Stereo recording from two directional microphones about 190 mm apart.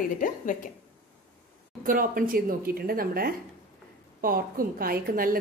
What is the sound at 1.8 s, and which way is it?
A woman's voice, 45° right (ahead or behind).